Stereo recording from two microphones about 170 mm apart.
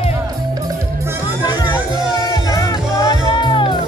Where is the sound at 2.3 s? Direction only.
25° left (ahead or behind).